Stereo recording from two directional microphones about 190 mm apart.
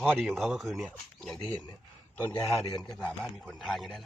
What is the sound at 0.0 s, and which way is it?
Speech, centre (ahead or behind).